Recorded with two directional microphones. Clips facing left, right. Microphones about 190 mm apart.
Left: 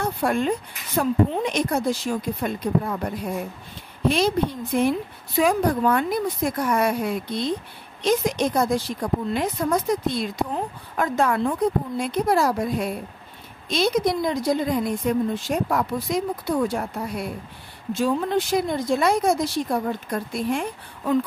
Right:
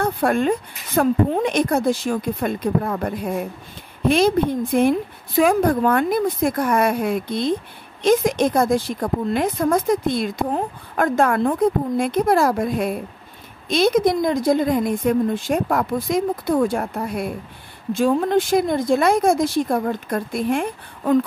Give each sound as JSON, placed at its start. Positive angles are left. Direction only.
{"t": 0.0, "sound": "speech", "side_deg": -55}
{"t": 4.1, "sound": "a woman's voice", "side_deg": -55}